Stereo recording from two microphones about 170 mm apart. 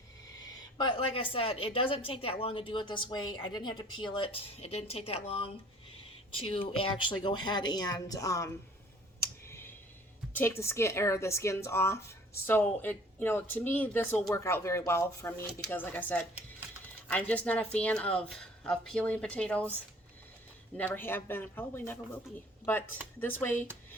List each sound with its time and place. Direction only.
0.8 s speech: 30° left (ahead or behind)
9.2 s clicking: 15° left (ahead or behind)
10.3 s speech: 15° left (ahead or behind)
20.7 s speech: 10° left (ahead or behind)
23.2 s speech: 10° left (ahead or behind)